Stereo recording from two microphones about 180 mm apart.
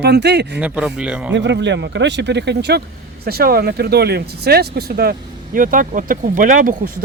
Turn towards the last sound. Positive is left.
turn(degrees=-50)  # may be behind; listen again after turning